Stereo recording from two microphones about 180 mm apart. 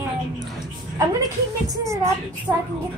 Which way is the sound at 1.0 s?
20° right (ahead or behind).